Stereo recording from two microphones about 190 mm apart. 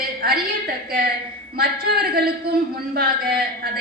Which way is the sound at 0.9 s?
50° right (ahead or behind).